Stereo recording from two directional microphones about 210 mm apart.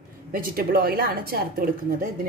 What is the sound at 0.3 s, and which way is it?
A woman's voice, 45° right (ahead or behind).